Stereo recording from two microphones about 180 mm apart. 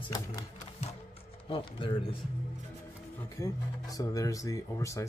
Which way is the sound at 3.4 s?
20° left (ahead or behind).